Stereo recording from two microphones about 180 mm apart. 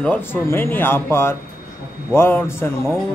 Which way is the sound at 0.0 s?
10° left (ahead or behind).